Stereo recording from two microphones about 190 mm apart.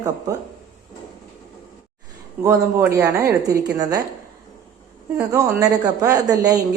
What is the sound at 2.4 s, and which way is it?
A woman's voice, 15° right (ahead or behind).